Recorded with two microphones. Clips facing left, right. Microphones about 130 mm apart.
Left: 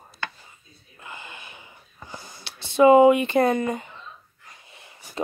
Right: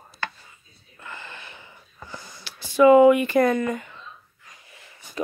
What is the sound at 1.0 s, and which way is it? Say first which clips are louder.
Gasp: right 1 dB; 15° left (ahead or behind).